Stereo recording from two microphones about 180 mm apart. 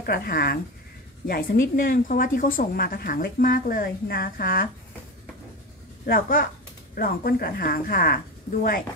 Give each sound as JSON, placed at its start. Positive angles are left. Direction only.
{"t": 0.0, "sound": "a woman's voice", "side_deg": 55}
{"t": 6.0, "sound": "a woman's voice", "side_deg": 55}